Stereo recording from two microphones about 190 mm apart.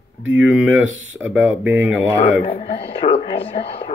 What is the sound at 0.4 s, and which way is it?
Speech, 10° right (ahead or behind).